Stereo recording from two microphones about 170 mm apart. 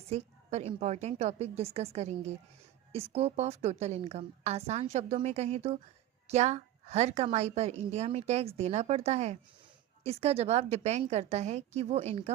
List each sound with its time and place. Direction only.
0.1 s a woman's voice: 40° right (ahead or behind)